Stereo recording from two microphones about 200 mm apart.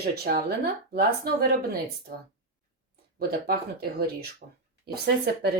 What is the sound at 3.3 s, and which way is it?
Speech, 50° right (ahead or behind).